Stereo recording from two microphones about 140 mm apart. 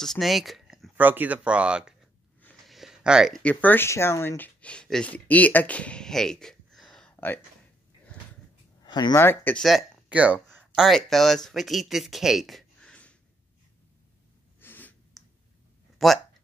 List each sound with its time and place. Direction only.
0.0 s speech: centre (ahead or behind)
0.9 s speech: 10° right (ahead or behind)
2.6 s a sound: centre (ahead or behind)
3.4 s speech: 15° left (ahead or behind)
8.8 s a sound: 30° left (ahead or behind)
9.1 s speech: 15° left (ahead or behind)
9.7 s speech: 5° right (ahead or behind)
10.8 s speech: centre (ahead or behind)
14.6 s a sound: 15° left (ahead or behind)
16.0 s speech: centre (ahead or behind)